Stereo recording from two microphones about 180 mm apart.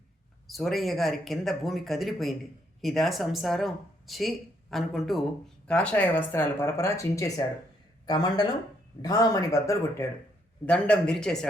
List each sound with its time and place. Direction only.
0.4 s speech: centre (ahead or behind); by 10.1 s 15° left (ahead or behind)
10.7 s speech: 5° left (ahead or behind)